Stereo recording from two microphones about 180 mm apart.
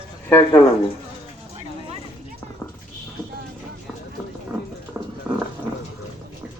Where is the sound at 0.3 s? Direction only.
10° left (ahead or behind).